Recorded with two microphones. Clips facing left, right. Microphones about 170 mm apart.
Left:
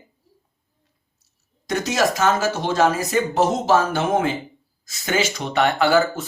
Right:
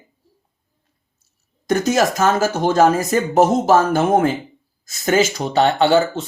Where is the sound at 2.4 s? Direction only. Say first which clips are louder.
Right 4 dB; 50° right (ahead or behind).